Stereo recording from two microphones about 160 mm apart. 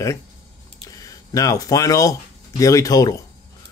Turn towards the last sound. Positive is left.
turn(degrees=20)  # may be behind; listen again after turning